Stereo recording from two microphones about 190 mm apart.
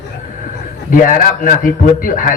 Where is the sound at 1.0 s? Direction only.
45° left (ahead or behind).